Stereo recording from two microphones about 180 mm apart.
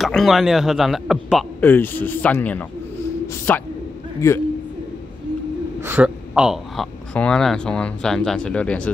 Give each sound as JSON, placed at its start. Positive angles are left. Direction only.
{"t": 0.0, "sound": "speech", "side_deg": 0}
{"t": 1.6, "sound": "a man's voice", "side_deg": 10}
{"t": 5.8, "sound": "speech", "side_deg": -10}